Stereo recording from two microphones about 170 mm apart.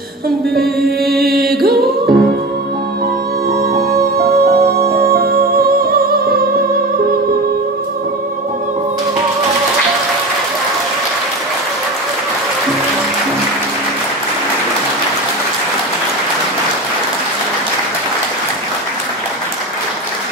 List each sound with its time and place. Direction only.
1.3 s music: 65° right (ahead or behind)
3.7 s music: 65° right (ahead or behind)